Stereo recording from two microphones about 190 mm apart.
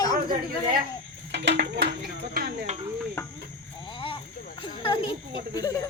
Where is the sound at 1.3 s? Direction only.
65° right (ahead or behind).